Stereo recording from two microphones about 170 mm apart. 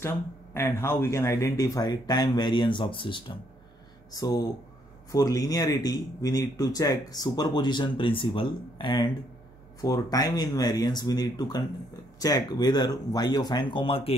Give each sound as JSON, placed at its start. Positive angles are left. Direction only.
{"t": 0.6, "sound": "speech", "side_deg": 15}